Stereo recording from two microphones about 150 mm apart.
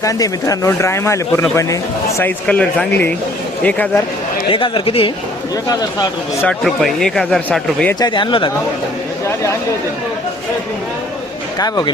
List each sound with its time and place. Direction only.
0.0 s speech: 25° left (ahead or behind)
4.4 s speech: 35° left (ahead or behind)
5.6 s speech: 25° left (ahead or behind)
6.4 s speech: 5° left (ahead or behind)
7.9 s speech: 30° left (ahead or behind)
9.2 s chatter: 20° left (ahead or behind)